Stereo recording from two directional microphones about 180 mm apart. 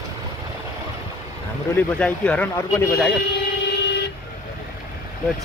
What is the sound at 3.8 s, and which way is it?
Vehicle, 70° left (ahead or behind).